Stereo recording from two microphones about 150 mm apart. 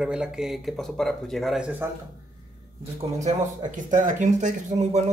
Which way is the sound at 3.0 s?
50° right (ahead or behind).